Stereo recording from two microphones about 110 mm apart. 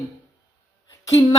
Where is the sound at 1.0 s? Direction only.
35° left (ahead or behind).